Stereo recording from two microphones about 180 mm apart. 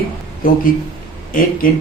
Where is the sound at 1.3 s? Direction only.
50° left (ahead or behind).